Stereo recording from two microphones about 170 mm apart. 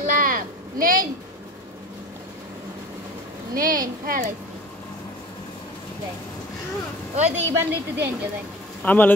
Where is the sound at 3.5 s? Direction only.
55° right (ahead or behind).